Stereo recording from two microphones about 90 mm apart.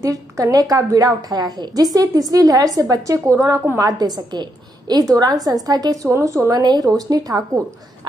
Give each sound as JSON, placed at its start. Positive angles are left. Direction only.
{"t": 0.0, "sound": "a woman's voice", "side_deg": -40}
{"t": 6.0, "sound": "a woman's voice", "side_deg": -35}
{"t": 6.6, "sound": "a woman's voice", "side_deg": -45}